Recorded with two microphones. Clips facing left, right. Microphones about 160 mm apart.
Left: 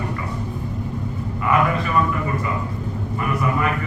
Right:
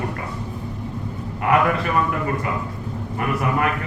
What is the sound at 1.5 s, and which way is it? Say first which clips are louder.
Speech: right 1 dB; 65° right (ahead or behind).